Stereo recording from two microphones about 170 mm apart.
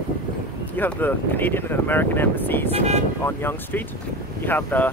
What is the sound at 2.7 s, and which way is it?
Speech, 40° right (ahead or behind).